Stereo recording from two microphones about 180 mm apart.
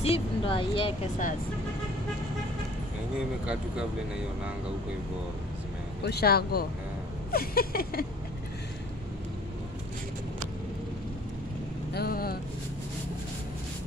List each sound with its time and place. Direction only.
0.0 s speech: 30° left (ahead or behind)
6.0 s a sound: 60° left (ahead or behind)
11.9 s vehicle: 60° left (ahead or behind)